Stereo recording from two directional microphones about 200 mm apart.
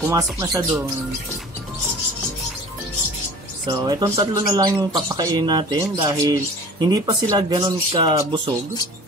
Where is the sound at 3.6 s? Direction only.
20° right (ahead or behind).